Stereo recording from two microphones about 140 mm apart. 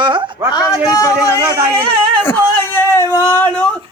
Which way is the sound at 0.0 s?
35° right (ahead or behind).